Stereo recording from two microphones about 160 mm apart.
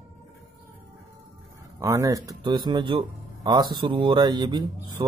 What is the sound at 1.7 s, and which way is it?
Speech, 20° right (ahead or behind).